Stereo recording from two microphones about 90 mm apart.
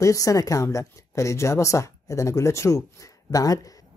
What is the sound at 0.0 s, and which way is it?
Speech, 40° left (ahead or behind).